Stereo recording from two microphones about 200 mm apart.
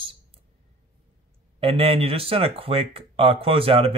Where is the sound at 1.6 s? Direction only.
30° right (ahead or behind).